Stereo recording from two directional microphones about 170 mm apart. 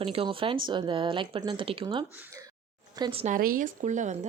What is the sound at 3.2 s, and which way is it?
Speech, 55° right (ahead or behind).